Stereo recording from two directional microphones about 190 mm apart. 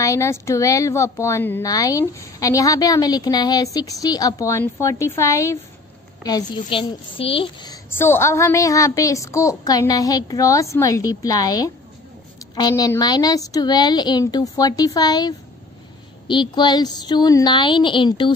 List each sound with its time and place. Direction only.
0.0 s a woman's voice: 15° left (ahead or behind)